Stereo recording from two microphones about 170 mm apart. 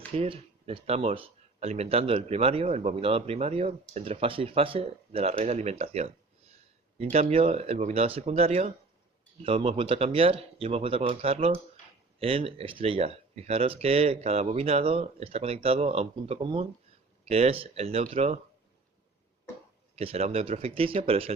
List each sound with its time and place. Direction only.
0.2 s speech: 35° right (ahead or behind)
20.0 s speech: 35° right (ahead or behind)